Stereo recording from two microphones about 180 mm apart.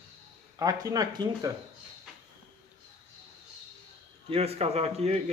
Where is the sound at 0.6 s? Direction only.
20° right (ahead or behind).